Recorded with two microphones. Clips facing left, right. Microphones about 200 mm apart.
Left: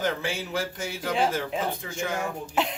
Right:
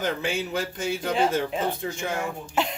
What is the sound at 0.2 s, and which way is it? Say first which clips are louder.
Speech: right 2 dB; 20° right (ahead or behind).